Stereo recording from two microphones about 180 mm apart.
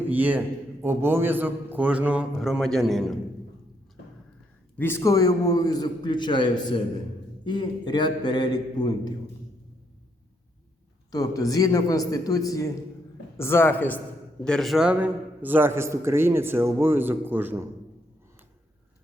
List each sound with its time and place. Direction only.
0.1 s a man's voice: 10° right (ahead or behind)
4.8 s a man's voice: 15° left (ahead or behind)
11.1 s a man's voice: 20° left (ahead or behind); by 17.7 s 10° right (ahead or behind)